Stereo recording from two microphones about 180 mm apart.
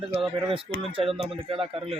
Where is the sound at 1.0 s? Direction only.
30° right (ahead or behind).